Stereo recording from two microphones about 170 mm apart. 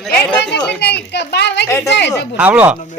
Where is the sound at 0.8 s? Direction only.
80° left.